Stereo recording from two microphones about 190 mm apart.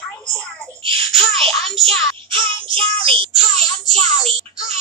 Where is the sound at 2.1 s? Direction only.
25° right (ahead or behind).